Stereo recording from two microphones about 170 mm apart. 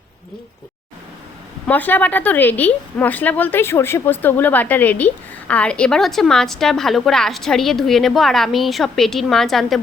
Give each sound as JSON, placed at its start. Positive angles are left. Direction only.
{"t": 1.6, "sound": "a woman's voice", "side_deg": 10}